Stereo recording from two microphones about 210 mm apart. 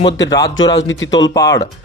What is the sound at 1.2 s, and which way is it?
Speech, 15° left (ahead or behind).